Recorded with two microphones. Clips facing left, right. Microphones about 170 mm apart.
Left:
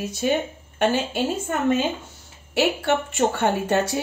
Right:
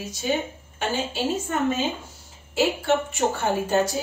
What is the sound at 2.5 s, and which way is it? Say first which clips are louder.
A woman's voice: left 1 dB; 70° left (ahead or behind).